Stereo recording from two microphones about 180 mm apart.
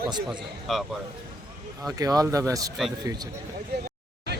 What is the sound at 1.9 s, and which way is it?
Speech, 20° right (ahead or behind).